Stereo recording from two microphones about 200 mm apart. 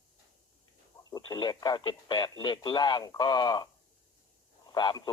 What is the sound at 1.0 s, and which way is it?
Speech, 20° left (ahead or behind).